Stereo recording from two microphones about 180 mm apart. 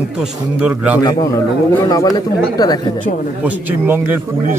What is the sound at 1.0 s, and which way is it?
Speech, 15° left (ahead or behind).